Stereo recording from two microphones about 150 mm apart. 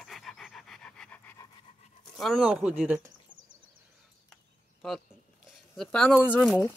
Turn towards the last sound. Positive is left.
turn(degrees=-5)  # may be behind; listen again after turning